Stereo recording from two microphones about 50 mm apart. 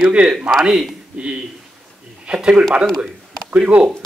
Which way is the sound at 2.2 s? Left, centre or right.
Right.